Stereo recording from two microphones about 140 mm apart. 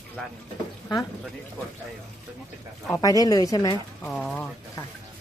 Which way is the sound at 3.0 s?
25° left (ahead or behind).